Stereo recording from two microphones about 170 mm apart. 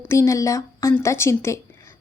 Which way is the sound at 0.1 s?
15° left (ahead or behind).